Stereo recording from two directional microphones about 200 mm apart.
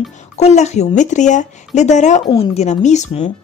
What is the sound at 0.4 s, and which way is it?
Speech, 35° left (ahead or behind).